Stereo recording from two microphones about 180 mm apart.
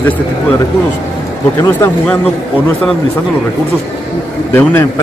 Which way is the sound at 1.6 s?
10° left (ahead or behind).